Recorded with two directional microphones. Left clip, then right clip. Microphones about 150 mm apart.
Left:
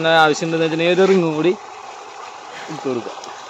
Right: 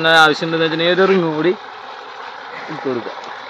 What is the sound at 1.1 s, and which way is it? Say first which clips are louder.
Speech: right 1 dB; 25° left (ahead or behind).